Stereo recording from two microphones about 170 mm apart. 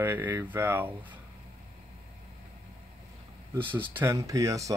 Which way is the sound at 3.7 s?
10° right (ahead or behind).